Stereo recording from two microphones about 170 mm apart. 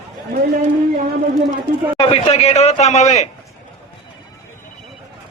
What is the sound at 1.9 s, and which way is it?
A man's voice, 35° left (ahead or behind).